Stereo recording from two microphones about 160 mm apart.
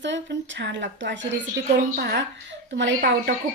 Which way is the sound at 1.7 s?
70° right (ahead or behind).